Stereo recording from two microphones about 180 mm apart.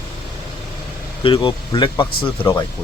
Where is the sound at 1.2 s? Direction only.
25° left (ahead or behind).